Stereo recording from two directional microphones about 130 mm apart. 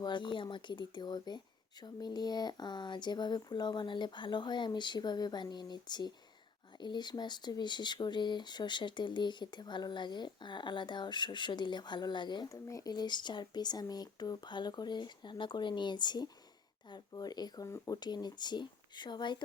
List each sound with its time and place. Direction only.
0.0 s speech: 35° left (ahead or behind)